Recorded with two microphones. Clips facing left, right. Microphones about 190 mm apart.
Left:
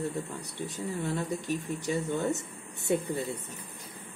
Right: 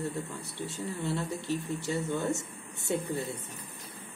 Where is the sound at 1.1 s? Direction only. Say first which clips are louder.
Left 1 dB; 15° left (ahead or behind).